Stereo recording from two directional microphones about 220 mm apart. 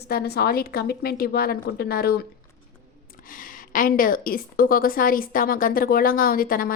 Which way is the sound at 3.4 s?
40° left (ahead or behind).